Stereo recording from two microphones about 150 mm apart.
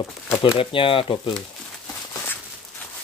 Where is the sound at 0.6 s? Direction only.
35° left (ahead or behind).